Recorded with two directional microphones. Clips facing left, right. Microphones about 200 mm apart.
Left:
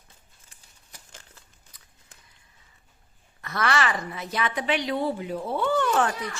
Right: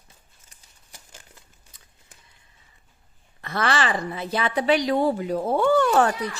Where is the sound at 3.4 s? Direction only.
30° right (ahead or behind).